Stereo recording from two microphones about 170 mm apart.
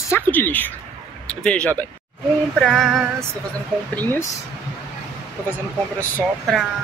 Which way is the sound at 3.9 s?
10° left (ahead or behind).